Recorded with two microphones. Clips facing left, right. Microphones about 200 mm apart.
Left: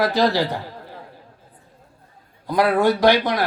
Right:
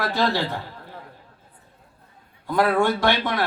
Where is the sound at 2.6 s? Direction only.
15° left (ahead or behind).